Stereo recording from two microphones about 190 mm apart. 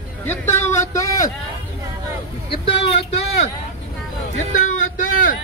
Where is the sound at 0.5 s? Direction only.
15° left (ahead or behind).